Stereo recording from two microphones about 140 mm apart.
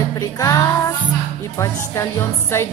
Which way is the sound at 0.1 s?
25° left (ahead or behind).